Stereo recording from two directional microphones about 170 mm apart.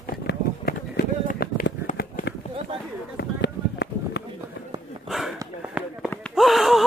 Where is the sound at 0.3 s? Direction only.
75° left (ahead or behind).